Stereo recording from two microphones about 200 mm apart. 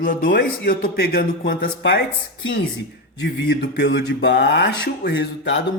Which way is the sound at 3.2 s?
60° left (ahead or behind).